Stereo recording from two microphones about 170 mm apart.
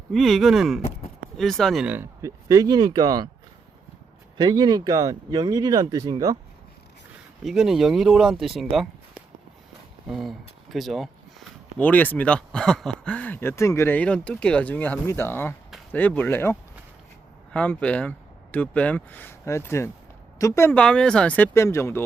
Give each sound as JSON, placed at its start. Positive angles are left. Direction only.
{"t": 0.1, "sound": "speech", "side_deg": 0}
{"t": 4.4, "sound": "speech", "side_deg": -25}
{"t": 7.4, "sound": "speech", "side_deg": 0}
{"t": 10.1, "sound": "speech", "side_deg": 0}